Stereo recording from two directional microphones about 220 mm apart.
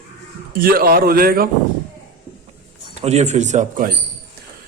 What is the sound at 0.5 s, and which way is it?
Speech, 40° right (ahead or behind).